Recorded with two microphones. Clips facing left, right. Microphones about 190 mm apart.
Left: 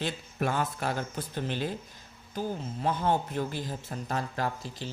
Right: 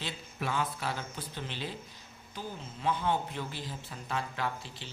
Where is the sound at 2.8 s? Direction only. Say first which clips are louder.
Left 3 dB; 45° left (ahead or behind).